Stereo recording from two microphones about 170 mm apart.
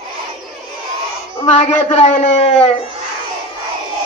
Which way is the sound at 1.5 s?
45° left (ahead or behind).